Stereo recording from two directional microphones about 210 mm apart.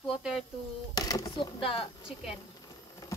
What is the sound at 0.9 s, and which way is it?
Speech, 20° left (ahead or behind).